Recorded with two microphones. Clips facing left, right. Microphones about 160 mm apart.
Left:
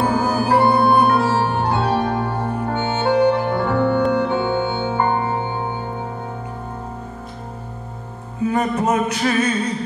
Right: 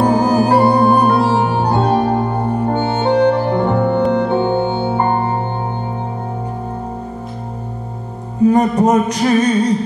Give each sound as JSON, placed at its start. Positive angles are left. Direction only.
{"t": 0.0, "sound": "music", "side_deg": -40}
{"t": 1.3, "sound": "organ", "side_deg": -15}
{"t": 1.7, "sound": "music", "side_deg": -35}
{"t": 8.4, "sound": "music", "side_deg": -35}